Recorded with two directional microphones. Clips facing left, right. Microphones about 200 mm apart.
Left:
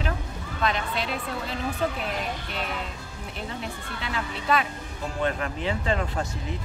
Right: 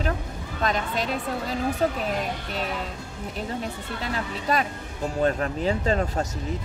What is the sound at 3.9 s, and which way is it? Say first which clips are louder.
Speech: right 1 dB; 40° right (ahead or behind).